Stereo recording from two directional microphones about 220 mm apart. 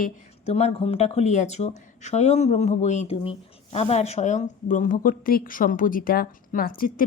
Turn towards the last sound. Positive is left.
turn(degrees=40)  # may be behind; listen again after turning